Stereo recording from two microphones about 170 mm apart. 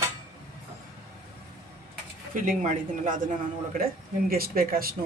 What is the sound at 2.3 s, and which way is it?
Speech, 50° right (ahead or behind).